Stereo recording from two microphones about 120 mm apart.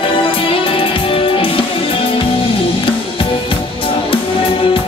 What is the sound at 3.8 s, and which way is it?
Music, 45° left (ahead or behind).